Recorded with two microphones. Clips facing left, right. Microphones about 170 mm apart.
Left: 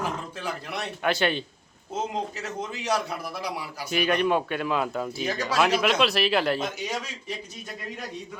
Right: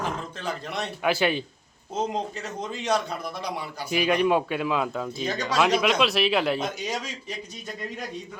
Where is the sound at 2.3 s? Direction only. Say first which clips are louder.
Right 1 dB; 5° left (ahead or behind).